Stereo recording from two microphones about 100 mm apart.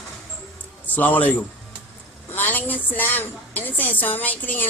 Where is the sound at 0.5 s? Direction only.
15° left (ahead or behind).